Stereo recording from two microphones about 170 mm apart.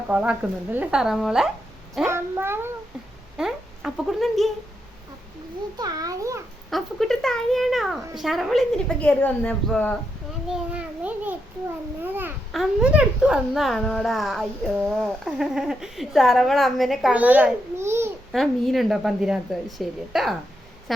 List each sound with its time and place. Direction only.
0.1 s a child's voice: 10° right (ahead or behind)
2.0 s a child's voice: 15° right (ahead or behind)
5.7 s a child's voice: 20° right (ahead or behind)
6.7 s a child's voice: centre (ahead or behind)
10.5 s a child's voice: 5° right (ahead or behind)
12.5 s a child's voice: 5° right (ahead or behind)
18.3 s a child's voice: centre (ahead or behind)